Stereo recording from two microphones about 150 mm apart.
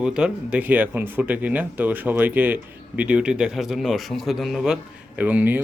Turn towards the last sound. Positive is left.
turn(degrees=-10)  # may be behind; listen again after turning